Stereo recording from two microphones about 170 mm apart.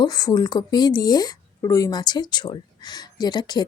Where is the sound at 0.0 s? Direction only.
20° left (ahead or behind).